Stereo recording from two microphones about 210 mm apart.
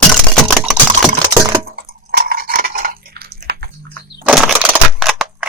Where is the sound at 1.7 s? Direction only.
50° right (ahead or behind).